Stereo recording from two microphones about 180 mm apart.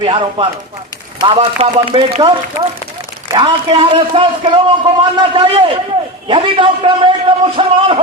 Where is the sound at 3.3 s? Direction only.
25° right (ahead or behind).